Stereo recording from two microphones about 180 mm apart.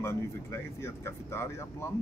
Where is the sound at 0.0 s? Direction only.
15° left (ahead or behind).